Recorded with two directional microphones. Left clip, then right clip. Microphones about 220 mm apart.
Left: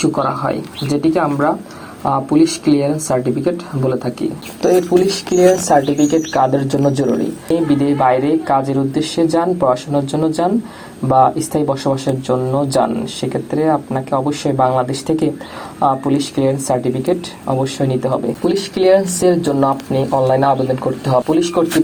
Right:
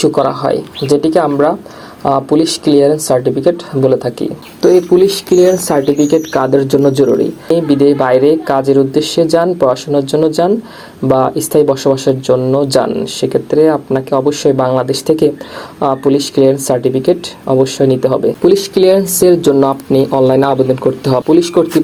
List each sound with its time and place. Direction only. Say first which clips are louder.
0.0 s speech: right 5 dB; 40° right (ahead or behind)